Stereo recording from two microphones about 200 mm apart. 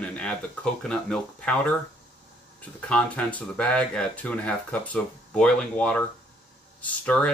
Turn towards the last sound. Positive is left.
turn(degrees=5)  # may be behind; listen again after turning